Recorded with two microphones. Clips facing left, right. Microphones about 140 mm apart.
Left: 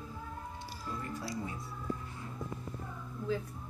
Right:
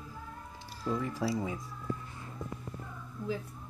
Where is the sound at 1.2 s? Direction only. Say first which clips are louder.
Right 12 dB; 90° right.